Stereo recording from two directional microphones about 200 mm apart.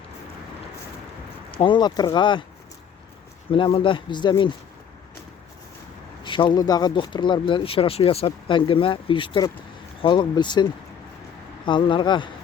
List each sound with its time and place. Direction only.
1.5 s speech: 25° left (ahead or behind)
3.5 s speech: 25° left (ahead or behind)
6.2 s speech: 25° left (ahead or behind)